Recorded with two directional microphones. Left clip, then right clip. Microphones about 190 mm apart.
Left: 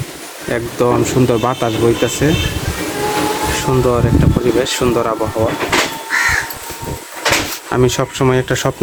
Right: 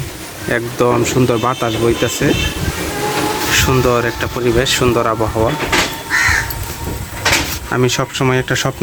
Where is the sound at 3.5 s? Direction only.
Centre (ahead or behind).